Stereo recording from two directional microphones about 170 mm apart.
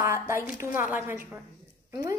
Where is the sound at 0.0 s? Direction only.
15° right (ahead or behind).